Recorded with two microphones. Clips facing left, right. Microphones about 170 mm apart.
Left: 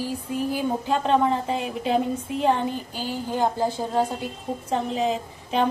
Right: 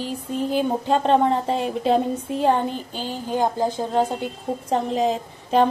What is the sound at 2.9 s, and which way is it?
A woman's voice, 20° right (ahead or behind).